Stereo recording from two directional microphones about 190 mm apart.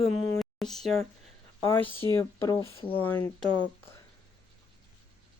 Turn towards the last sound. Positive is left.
turn(degrees=10)  # may be behind; listen again after turning